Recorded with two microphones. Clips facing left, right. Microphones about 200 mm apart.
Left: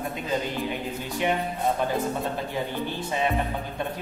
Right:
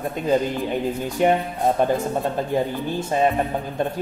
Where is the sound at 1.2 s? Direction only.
45° right (ahead or behind).